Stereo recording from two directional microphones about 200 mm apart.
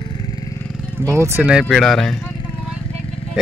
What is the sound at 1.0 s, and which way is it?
Speech, 15° right (ahead or behind).